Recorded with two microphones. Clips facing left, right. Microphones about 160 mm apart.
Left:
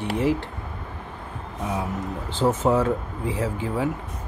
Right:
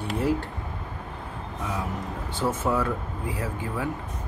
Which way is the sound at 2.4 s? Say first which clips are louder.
Left 5 dB; 25° left (ahead or behind).